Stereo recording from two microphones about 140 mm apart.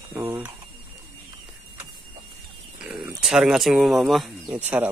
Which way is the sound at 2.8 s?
5° right (ahead or behind).